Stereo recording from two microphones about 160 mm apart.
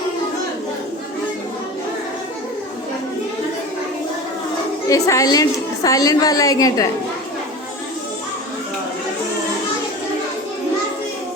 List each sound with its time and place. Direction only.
4.9 s a woman's voice: 20° left (ahead or behind)